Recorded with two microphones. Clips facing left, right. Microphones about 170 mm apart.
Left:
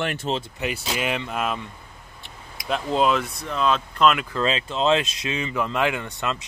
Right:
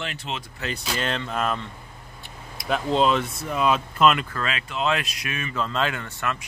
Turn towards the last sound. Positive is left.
turn(degrees=20)  # may be behind; listen again after turning